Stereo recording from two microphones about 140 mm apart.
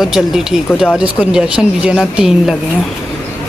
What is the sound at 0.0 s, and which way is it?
Speech, centre (ahead or behind).